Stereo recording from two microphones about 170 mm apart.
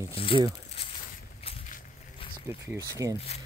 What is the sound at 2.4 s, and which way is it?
Speech, 15° right (ahead or behind).